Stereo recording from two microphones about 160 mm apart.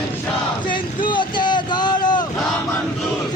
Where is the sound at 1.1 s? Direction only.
30° left (ahead or behind).